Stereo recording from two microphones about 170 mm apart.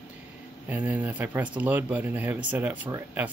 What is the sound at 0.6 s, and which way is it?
A man's voice, 10° right (ahead or behind).